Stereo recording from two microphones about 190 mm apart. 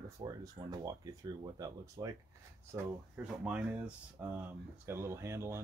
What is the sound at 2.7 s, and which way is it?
Speech, 5° right (ahead or behind).